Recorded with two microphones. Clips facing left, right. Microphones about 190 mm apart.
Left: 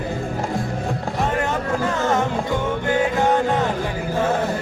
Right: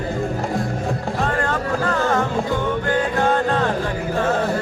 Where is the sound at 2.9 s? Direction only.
20° left (ahead or behind).